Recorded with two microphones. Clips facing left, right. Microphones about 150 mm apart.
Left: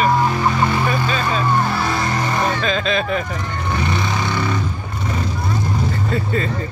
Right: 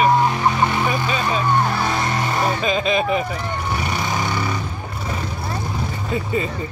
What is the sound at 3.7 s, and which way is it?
Vehicle, 10° right (ahead or behind).